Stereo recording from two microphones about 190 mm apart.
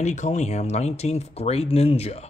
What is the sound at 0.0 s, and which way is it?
Speech, 40° left (ahead or behind).